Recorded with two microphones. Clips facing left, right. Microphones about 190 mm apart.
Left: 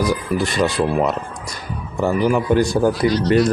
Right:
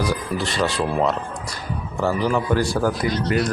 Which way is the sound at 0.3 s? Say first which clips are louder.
Left 5 dB; 15° left (ahead or behind).